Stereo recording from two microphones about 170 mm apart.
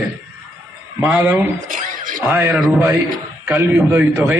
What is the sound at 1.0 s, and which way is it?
Speech, 10° right (ahead or behind).